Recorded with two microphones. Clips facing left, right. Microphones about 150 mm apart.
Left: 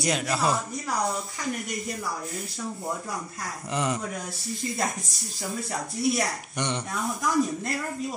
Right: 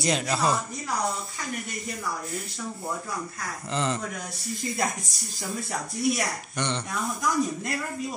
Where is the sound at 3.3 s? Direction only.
15° left (ahead or behind).